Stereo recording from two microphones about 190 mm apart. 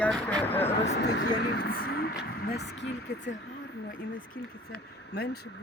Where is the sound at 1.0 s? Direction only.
65° left (ahead or behind).